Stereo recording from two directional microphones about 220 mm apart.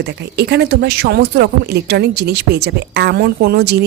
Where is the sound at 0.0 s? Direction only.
50° right (ahead or behind).